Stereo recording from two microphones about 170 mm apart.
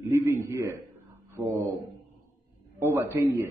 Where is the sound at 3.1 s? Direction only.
15° right (ahead or behind).